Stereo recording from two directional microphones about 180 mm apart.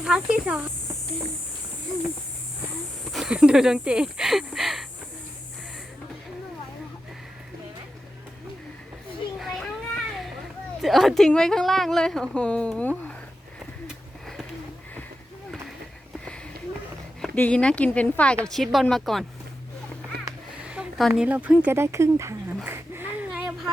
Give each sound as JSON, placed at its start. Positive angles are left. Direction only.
{"t": 0.0, "sound": "a woman's voice", "side_deg": -5}
{"t": 3.1, "sound": "speech", "side_deg": 0}
{"t": 9.4, "sound": "children playing", "side_deg": 0}
{"t": 10.8, "sound": "a woman's voice", "side_deg": 0}
{"t": 13.8, "sound": "a sound", "side_deg": 0}
{"t": 17.2, "sound": "a woman's voice", "side_deg": 5}
{"t": 20.1, "sound": "music", "side_deg": -60}
{"t": 20.6, "sound": "a sound", "side_deg": -5}
{"t": 21.2, "sound": "dog", "side_deg": -10}